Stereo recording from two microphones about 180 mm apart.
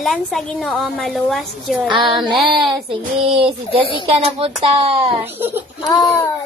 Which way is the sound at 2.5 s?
25° right (ahead or behind).